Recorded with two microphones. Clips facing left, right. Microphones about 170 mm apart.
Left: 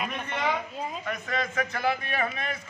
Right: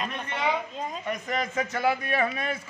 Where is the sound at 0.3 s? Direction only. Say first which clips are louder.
Right 1 dB; 10° right (ahead or behind).